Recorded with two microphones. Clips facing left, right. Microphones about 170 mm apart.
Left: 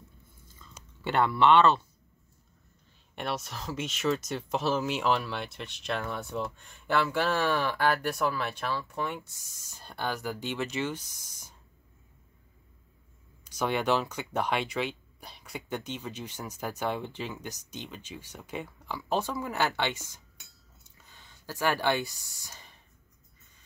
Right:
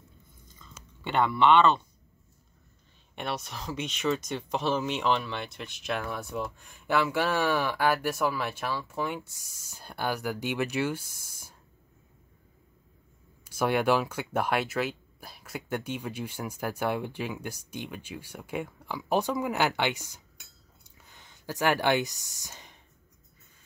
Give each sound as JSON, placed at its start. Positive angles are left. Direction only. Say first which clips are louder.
{"t": 0.7, "sound": "speech", "louder": "even", "side_deg": 5}
{"t": 3.2, "sound": "speech", "louder": "even", "side_deg": 0}
{"t": 13.4, "sound": "speech", "louder": "right 3 dB", "side_deg": -10}
{"t": 20.8, "sound": "a sound", "louder": "right 2 dB", "side_deg": -15}